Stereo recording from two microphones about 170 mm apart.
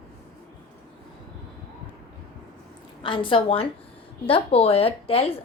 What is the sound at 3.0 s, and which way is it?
Speech, 30° left (ahead or behind).